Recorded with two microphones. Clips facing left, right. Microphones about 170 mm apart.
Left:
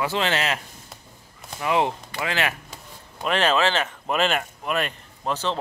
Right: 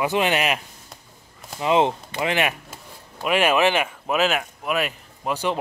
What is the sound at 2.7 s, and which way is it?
Speech, 10° right (ahead or behind).